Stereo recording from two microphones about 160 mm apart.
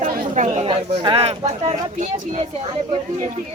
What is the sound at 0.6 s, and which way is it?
Speech, 35° right (ahead or behind).